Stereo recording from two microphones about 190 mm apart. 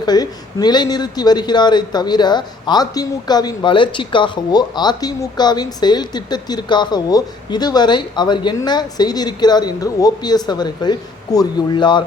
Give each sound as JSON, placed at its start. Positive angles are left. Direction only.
{"t": 0.0, "sound": "a man's voice", "side_deg": 20}